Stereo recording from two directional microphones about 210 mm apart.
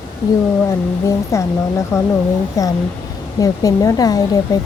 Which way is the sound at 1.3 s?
15° left (ahead or behind).